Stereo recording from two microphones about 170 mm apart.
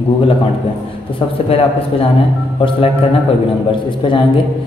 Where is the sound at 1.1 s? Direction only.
30° left (ahead or behind).